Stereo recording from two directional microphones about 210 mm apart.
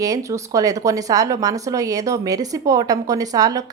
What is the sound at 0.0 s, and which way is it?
A woman's voice, 15° right (ahead or behind).